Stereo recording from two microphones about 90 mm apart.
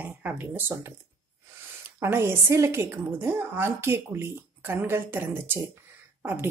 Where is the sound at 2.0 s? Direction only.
25° right (ahead or behind).